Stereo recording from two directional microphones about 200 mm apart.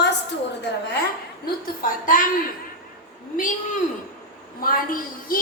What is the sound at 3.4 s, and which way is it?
A man's voice, 40° left (ahead or behind).